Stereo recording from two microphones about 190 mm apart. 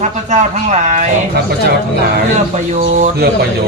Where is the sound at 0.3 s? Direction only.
40° right (ahead or behind).